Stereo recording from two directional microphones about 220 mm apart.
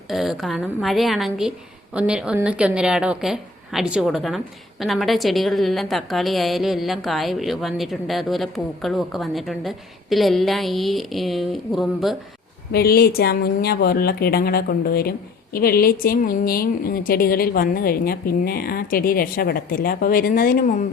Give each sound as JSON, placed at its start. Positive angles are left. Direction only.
{"t": 0.1, "sound": "a woman's voice", "side_deg": 0}
{"t": 12.7, "sound": "a woman's voice", "side_deg": 45}